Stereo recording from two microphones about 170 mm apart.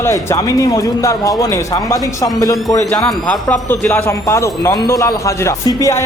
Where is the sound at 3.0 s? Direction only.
5° left (ahead or behind).